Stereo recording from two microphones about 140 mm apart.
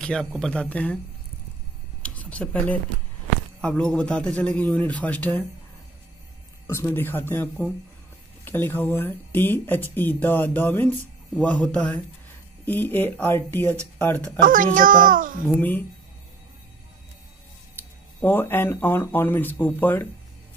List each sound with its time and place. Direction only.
0.0 s speech: 5° left (ahead or behind)
2.0 s speech: 10° left (ahead or behind)
6.7 s speech: 15° left (ahead or behind)
14.4 s a child's voice: 75° right (ahead or behind)
18.2 s speech: 15° left (ahead or behind)